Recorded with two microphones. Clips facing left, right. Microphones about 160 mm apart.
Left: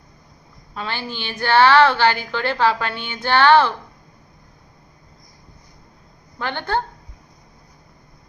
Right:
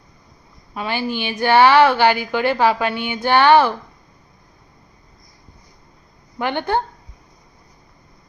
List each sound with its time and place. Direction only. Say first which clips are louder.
0.7 s a woman's voice: right 6 dB; 10° right (ahead or behind)
6.4 s a woman's voice: right 3 dB; 15° right (ahead or behind)